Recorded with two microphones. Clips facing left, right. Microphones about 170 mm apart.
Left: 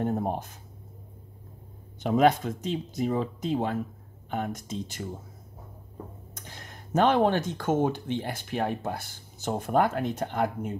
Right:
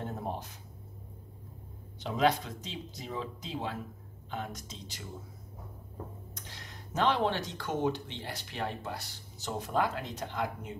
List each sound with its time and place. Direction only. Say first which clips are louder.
0.0 s a sound: left 9 dB; 50° left (ahead or behind)
2.0 s speech: left 7 dB; 50° left (ahead or behind)
6.3 s speech: left 3 dB; 50° left (ahead or behind)